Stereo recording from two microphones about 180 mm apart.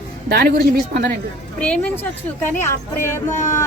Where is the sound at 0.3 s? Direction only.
60° right (ahead or behind).